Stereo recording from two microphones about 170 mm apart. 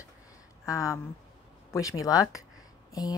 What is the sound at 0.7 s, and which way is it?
A woman's voice, 20° left (ahead or behind).